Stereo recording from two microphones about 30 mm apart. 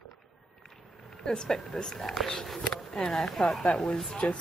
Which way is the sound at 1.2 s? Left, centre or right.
Left.